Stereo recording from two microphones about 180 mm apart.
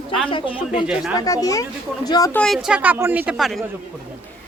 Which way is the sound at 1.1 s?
20° left (ahead or behind).